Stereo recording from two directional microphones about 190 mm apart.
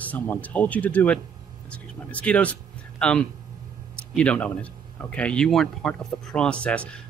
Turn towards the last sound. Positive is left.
turn(degrees=5)  # may be behind; listen again after turning